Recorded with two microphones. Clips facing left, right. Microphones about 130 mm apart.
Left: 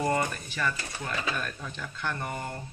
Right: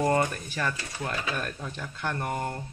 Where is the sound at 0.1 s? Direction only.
45° right (ahead or behind).